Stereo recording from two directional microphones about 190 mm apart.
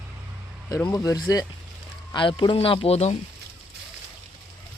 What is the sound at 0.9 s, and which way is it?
Speech, 20° left (ahead or behind).